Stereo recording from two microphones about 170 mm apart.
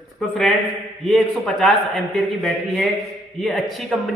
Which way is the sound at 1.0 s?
Centre (ahead or behind).